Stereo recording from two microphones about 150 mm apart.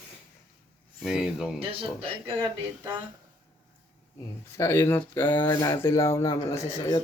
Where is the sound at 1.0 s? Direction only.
5° right (ahead or behind).